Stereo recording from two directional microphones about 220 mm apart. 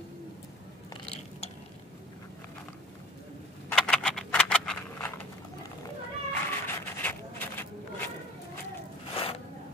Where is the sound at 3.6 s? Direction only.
5° left (ahead or behind).